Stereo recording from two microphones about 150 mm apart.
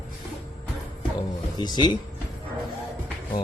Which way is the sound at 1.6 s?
30° left (ahead or behind).